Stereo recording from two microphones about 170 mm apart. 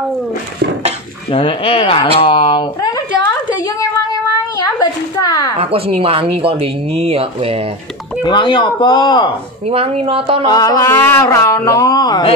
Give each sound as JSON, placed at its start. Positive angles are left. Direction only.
{"t": 1.3, "sound": "speech", "side_deg": 30}
{"t": 4.6, "sound": "speech", "side_deg": 20}
{"t": 5.6, "sound": "speech", "side_deg": -35}
{"t": 8.2, "sound": "speech", "side_deg": 25}
{"t": 9.7, "sound": "speech", "side_deg": -35}
{"t": 10.4, "sound": "speech", "side_deg": 20}